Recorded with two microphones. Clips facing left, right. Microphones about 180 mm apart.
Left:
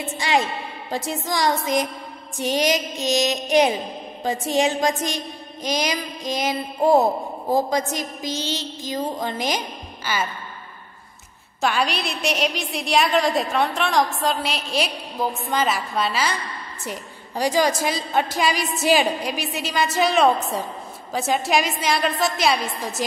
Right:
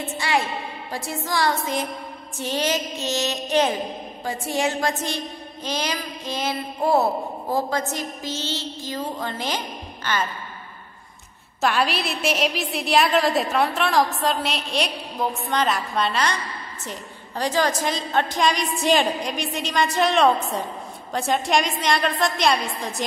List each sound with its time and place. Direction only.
0.2 s a woman's voice: 20° left (ahead or behind)
11.6 s a woman's voice: centre (ahead or behind)
17.4 s a woman's voice: 10° left (ahead or behind)